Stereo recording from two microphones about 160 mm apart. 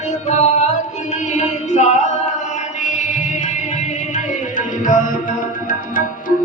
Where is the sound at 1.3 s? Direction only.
45° left (ahead or behind).